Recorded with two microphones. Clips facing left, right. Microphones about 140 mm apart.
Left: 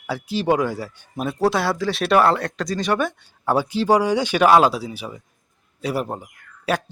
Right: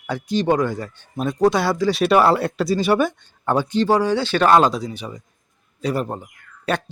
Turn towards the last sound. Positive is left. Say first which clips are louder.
# even
turn(degrees=5)  # may be behind; listen again after turning